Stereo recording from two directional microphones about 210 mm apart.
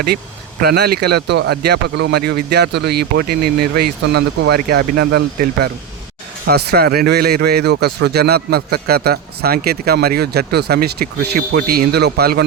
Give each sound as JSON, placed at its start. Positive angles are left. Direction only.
{"t": 0.6, "sound": "speech", "side_deg": -50}